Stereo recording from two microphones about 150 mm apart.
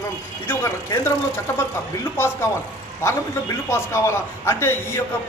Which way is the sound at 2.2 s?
15° left (ahead or behind).